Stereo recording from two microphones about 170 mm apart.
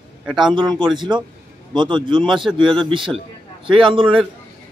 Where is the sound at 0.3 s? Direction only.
5° right (ahead or behind).